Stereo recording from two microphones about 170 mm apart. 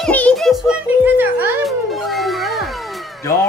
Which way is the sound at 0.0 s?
5° left (ahead or behind).